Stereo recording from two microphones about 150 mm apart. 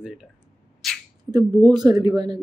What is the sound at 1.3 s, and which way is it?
Speech, 25° right (ahead or behind).